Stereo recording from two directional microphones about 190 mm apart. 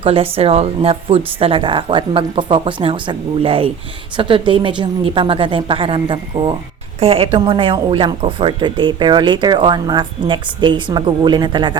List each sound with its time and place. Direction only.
0.0 s speech: 30° right (ahead or behind)